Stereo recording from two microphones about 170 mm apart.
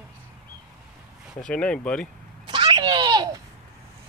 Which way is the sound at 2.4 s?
25° right (ahead or behind).